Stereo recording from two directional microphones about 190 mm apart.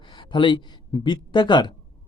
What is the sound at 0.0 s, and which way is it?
A man's voice, 25° left (ahead or behind).